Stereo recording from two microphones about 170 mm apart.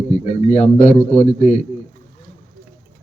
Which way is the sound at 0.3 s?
40° left (ahead or behind).